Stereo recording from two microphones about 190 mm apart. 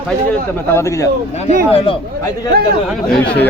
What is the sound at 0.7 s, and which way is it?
Speech, 15° left (ahead or behind).